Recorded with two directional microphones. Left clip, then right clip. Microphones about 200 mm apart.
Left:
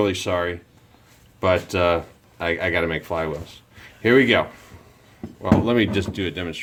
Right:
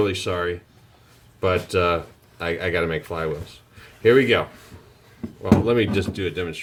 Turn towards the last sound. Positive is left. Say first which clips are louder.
# right 1 dB
turn(degrees=40)  # may be behind; listen again after turning